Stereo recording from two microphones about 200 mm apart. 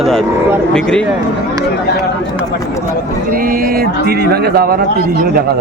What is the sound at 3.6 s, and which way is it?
Speech, 50° right (ahead or behind).